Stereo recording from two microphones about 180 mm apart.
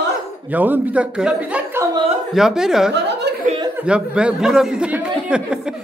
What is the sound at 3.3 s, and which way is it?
Chuckle, 70° right (ahead or behind).